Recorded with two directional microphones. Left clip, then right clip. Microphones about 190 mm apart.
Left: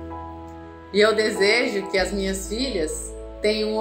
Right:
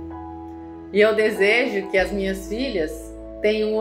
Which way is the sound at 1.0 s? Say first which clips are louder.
Right 1 dB; 10° right (ahead or behind).